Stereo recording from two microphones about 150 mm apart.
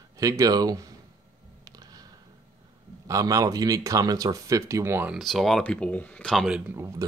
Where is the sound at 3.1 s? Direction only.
25° right (ahead or behind).